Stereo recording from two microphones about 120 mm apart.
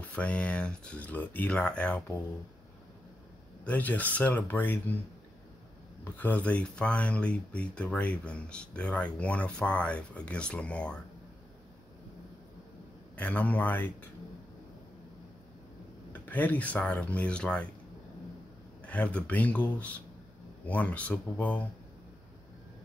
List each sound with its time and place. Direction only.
0.0 s speech: 10° left (ahead or behind)
3.6 s speech: 15° left (ahead or behind)
6.0 s speech: 15° left (ahead or behind)
13.1 s speech: 10° left (ahead or behind)
16.1 s speech: 15° left (ahead or behind)
18.8 s speech: 10° left (ahead or behind)